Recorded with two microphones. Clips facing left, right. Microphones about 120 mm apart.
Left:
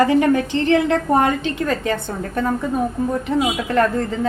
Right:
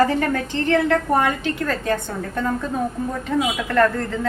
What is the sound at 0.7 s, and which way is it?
A woman's voice, 25° left (ahead or behind).